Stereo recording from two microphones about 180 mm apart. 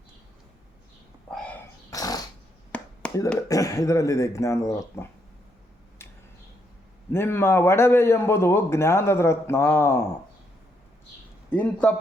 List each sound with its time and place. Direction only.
1.9 s dog: 20° left (ahead or behind)
3.0 s a sound: 5° left (ahead or behind)
3.5 s a man's voice: 20° left (ahead or behind)
7.1 s a man's voice: 15° left (ahead or behind)
11.5 s a man's voice: 5° left (ahead or behind)